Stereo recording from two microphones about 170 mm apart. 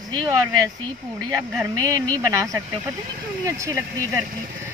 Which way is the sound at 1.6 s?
20° right (ahead or behind).